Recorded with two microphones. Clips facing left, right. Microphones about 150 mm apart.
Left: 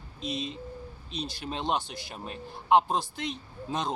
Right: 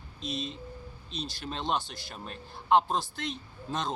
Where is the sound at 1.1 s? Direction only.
55° left (ahead or behind).